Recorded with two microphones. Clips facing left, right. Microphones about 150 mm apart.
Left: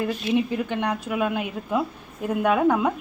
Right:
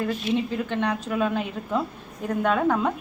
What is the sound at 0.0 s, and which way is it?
A woman's voice, 15° left (ahead or behind).